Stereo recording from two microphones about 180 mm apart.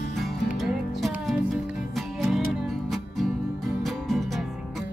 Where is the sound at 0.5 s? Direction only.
Centre (ahead or behind).